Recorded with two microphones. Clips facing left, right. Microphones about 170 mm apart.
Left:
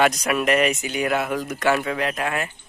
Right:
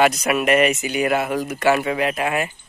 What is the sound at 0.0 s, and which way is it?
Speech, 5° right (ahead or behind).